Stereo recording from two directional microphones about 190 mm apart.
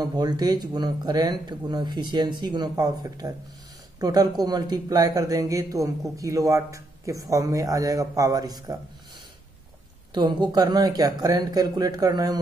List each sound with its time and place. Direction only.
0.0 s speech: 20° right (ahead or behind)
10.1 s speech: 25° right (ahead or behind)